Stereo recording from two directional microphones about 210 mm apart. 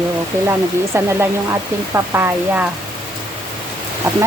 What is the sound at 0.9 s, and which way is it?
Speech, 10° right (ahead or behind).